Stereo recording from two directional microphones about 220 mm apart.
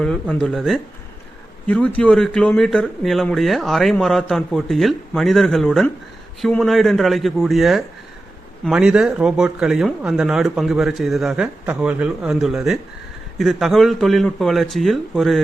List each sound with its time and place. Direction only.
0.0 s speech: 5° left (ahead or behind)